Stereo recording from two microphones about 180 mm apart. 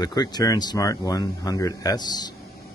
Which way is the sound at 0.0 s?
20° left (ahead or behind).